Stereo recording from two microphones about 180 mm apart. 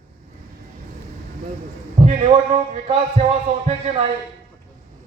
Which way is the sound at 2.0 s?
35° right (ahead or behind).